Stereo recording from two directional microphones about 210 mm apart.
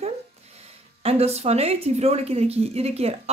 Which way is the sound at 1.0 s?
30° right (ahead or behind).